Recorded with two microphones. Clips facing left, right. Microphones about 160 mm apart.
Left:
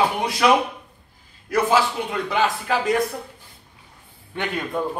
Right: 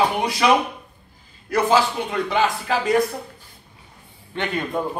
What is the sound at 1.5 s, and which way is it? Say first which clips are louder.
A man's voice: right 1 dB; 5° left (ahead or behind).